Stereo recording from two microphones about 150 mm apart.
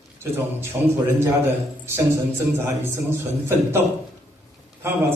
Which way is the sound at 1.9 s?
15° right (ahead or behind).